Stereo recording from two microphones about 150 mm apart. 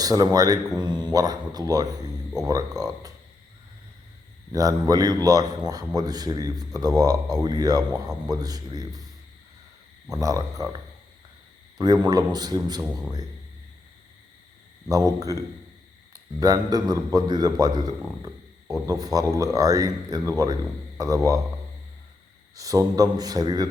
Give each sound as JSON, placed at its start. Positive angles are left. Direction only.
{"t": 0.0, "sound": "a man's voice", "side_deg": -25}
{"t": 4.5, "sound": "a man's voice", "side_deg": -25}
{"t": 10.1, "sound": "a man's voice", "side_deg": -20}
{"t": 11.8, "sound": "a man's voice", "side_deg": -25}
{"t": 14.8, "sound": "a man's voice", "side_deg": -25}
{"t": 22.5, "sound": "a man's voice", "side_deg": -20}